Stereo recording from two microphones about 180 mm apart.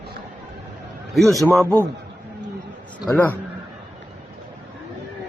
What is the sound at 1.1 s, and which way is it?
Speech, centre (ahead or behind).